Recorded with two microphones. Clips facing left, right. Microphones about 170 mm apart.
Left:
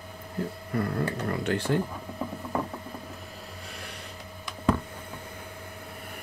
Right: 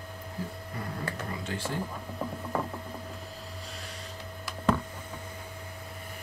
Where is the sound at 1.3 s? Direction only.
65° left (ahead or behind).